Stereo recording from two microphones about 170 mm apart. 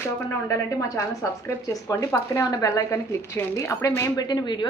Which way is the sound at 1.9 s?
20° left (ahead or behind).